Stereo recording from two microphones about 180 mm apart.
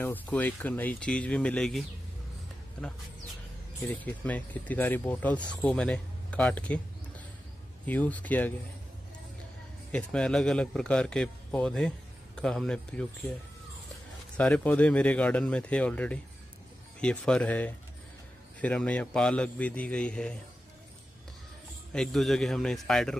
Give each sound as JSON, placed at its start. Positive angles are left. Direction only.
{"t": 0.0, "sound": "speech", "side_deg": 10}
{"t": 3.9, "sound": "speech", "side_deg": 10}
{"t": 7.8, "sound": "speech", "side_deg": 10}
{"t": 9.8, "sound": "a man's voice", "side_deg": 5}
{"t": 14.3, "sound": "speech", "side_deg": 5}
{"t": 21.9, "sound": "a man's voice", "side_deg": 5}